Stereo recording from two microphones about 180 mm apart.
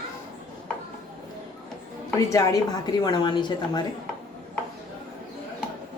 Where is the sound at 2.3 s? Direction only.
20° left (ahead or behind).